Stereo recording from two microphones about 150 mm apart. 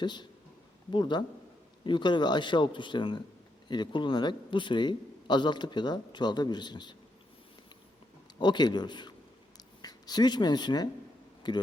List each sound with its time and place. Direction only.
0.0 s a man's voice: 30° left (ahead or behind)
8.4 s a man's voice: 30° left (ahead or behind)
9.6 s a sound: 25° left (ahead or behind)
11.4 s a man's voice: 30° left (ahead or behind)